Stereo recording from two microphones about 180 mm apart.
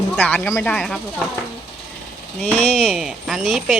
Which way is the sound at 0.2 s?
10° left (ahead or behind).